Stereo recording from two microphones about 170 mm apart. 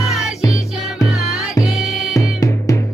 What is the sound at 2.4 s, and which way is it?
Music, 20° left (ahead or behind).